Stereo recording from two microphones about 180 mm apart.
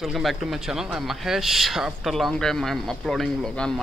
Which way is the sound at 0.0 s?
Centre (ahead or behind).